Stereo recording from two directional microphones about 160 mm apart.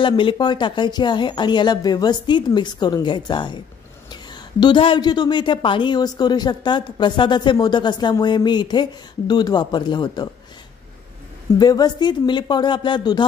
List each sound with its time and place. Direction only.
0.0 s a woman's voice: 30° left (ahead or behind)
11.5 s a woman's voice: 25° left (ahead or behind)